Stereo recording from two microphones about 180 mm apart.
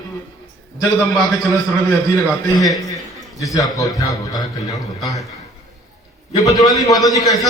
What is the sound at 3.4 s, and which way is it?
Speech, 20° left (ahead or behind).